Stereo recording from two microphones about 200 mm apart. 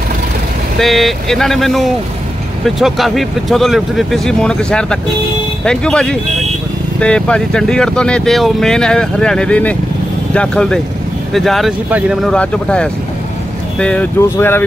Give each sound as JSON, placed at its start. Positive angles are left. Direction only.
{"t": 0.7, "sound": "speech", "side_deg": 0}